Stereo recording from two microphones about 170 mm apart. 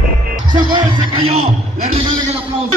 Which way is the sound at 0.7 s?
35° right (ahead or behind).